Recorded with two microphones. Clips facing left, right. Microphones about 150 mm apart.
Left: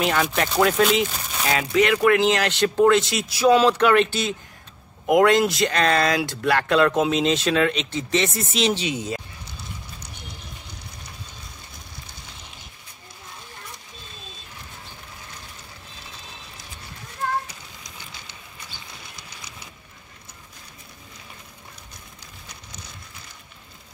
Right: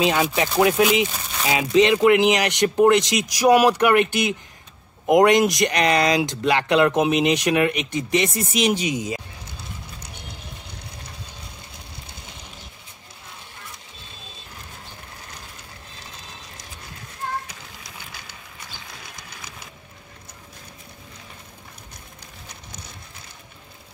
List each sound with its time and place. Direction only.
0.0 s speech: 15° right (ahead or behind)